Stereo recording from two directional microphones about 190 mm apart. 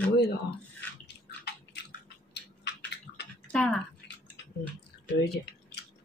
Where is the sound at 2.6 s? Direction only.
60° left (ahead or behind).